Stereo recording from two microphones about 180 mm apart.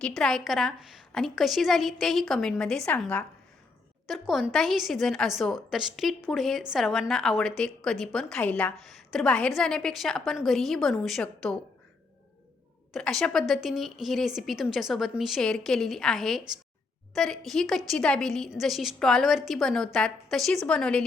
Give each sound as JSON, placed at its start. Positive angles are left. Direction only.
{"t": 0.0, "sound": "a woman's voice", "side_deg": 5}
{"t": 12.9, "sound": "a woman's voice", "side_deg": 0}